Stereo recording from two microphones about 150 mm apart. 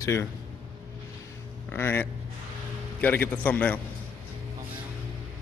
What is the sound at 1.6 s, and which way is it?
Speech, 15° left (ahead or behind).